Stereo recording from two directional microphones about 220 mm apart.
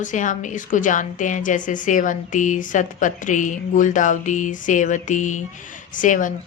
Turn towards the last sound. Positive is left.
turn(degrees=35)  # may be behind; listen again after turning